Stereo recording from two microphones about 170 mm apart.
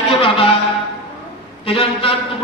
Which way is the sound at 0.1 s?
35° left (ahead or behind).